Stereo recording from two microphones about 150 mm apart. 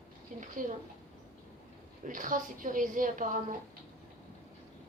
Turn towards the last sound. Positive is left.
turn(degrees=-60)  # may be behind; listen again after turning